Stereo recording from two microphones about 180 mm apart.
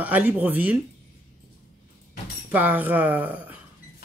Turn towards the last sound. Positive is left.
turn(degrees=-10)  # may be behind; listen again after turning